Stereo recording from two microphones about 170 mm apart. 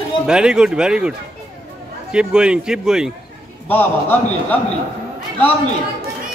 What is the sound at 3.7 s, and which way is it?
Speech, 10° left (ahead or behind).